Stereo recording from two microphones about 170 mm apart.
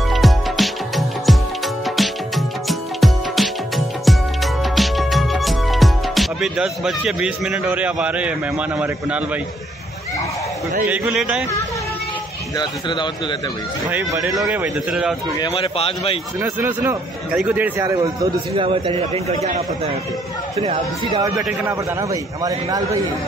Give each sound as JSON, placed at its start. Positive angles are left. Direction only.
{"t": 0.1, "sound": "music", "side_deg": 0}
{"t": 10.9, "sound": "a man's voice", "side_deg": -5}
{"t": 12.5, "sound": "speech", "side_deg": 25}
{"t": 13.8, "sound": "a man's voice", "side_deg": -10}
{"t": 15.3, "sound": "a man's voice", "side_deg": 30}
{"t": 16.4, "sound": "a man's voice", "side_deg": -15}
{"t": 18.7, "sound": "a man's voice", "side_deg": -35}
{"t": 21.1, "sound": "a man's voice", "side_deg": -25}